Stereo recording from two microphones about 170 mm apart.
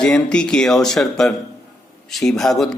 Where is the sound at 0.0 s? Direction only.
5° left (ahead or behind).